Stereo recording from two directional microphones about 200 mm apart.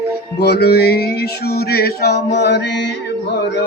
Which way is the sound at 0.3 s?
55° left (ahead or behind).